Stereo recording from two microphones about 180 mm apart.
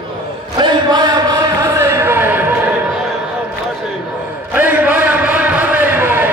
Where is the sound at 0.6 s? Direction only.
20° right (ahead or behind).